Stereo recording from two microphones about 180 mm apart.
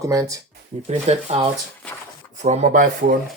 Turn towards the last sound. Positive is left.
turn(degrees=-45)  # may be behind; listen again after turning